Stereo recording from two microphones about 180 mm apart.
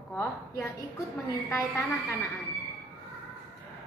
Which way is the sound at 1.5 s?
15° left (ahead or behind).